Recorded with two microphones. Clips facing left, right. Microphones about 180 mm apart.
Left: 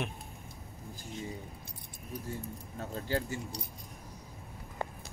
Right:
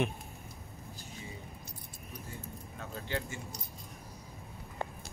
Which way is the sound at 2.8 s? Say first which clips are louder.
Left 4 dB; 35° left (ahead or behind).